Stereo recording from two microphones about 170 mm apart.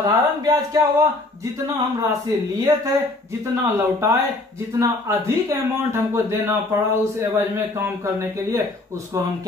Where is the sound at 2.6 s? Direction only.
15° right (ahead or behind).